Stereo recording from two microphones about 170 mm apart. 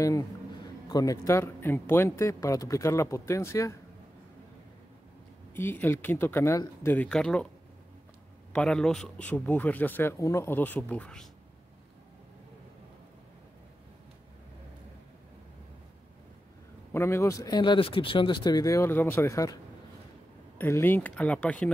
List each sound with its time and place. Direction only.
0.8 s speech: 20° left (ahead or behind)
5.5 s speech: 10° left (ahead or behind)
8.5 s speech: 5° left (ahead or behind)
16.9 s speech: 15° left (ahead or behind)